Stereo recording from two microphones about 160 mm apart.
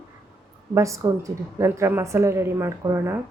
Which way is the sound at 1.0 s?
20° right (ahead or behind).